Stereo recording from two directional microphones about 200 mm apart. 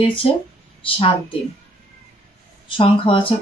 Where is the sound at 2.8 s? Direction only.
25° left (ahead or behind).